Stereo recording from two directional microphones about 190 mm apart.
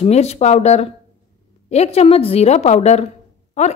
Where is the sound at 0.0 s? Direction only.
35° left (ahead or behind).